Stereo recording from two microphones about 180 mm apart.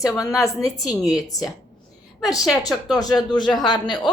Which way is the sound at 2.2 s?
Centre (ahead or behind).